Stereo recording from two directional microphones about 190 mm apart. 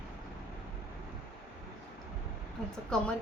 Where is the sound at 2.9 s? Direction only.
5° left (ahead or behind).